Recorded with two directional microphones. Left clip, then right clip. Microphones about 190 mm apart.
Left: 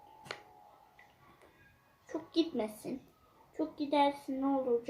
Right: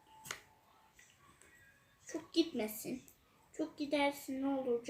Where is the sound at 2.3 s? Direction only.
10° right (ahead or behind).